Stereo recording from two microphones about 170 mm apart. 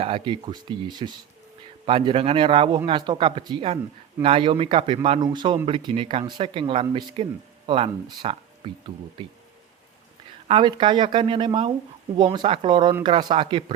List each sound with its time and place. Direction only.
0.0 s speech: 30° right (ahead or behind)
10.5 s speech: 30° right (ahead or behind)